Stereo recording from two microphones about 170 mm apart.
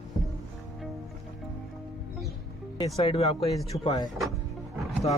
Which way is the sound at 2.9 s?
35° left (ahead or behind).